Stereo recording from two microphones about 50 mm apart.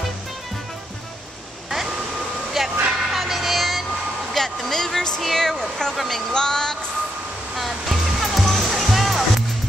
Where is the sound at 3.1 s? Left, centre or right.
Centre.